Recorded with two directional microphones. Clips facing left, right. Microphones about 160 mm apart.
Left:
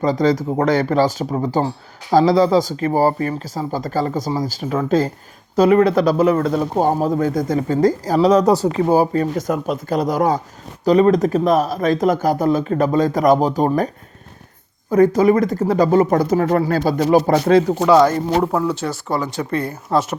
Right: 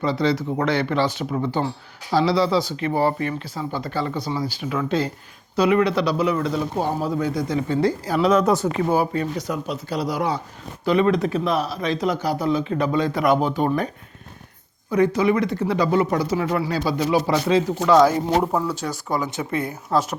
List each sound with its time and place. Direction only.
0.0 s speech: 45° left (ahead or behind)
18.0 s speech: 10° right (ahead or behind)